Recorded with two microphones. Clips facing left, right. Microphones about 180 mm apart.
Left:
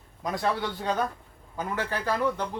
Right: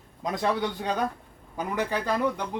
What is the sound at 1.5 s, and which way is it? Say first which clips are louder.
Speech: right 2 dB; 15° right (ahead or behind).